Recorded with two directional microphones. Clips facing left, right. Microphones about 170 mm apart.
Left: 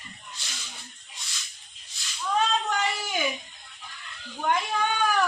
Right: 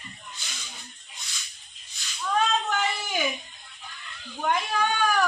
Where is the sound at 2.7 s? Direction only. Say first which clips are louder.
Even; centre (ahead or behind).